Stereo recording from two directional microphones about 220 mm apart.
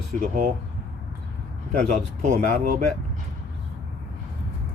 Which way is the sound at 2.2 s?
35° right (ahead or behind).